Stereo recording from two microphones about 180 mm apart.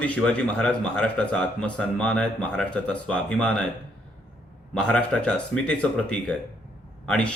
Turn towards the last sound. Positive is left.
turn(degrees=5)  # may be behind; listen again after turning